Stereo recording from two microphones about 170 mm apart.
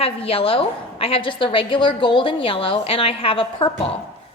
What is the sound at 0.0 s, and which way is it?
A woman's voice, 35° left (ahead or behind).